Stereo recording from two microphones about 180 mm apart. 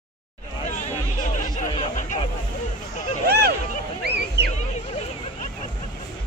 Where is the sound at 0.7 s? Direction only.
45° left (ahead or behind).